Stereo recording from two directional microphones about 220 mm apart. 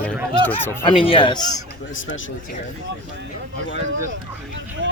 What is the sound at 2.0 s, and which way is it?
Speech, 60° left (ahead or behind).